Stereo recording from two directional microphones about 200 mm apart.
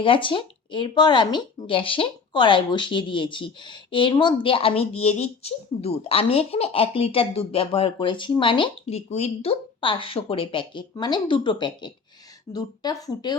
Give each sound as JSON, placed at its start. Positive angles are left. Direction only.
{"t": 0.0, "sound": "speech", "side_deg": 25}